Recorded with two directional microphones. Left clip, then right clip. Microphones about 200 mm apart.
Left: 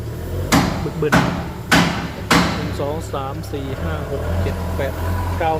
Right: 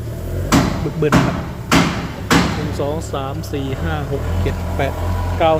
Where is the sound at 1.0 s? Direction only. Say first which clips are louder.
Right 1 dB; 15° right (ahead or behind).